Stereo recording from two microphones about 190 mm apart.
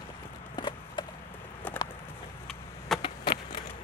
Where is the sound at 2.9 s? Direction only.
Centre (ahead or behind).